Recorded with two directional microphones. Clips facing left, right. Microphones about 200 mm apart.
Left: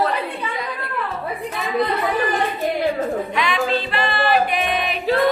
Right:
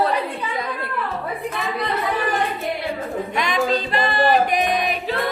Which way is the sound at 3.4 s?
40° right (ahead or behind).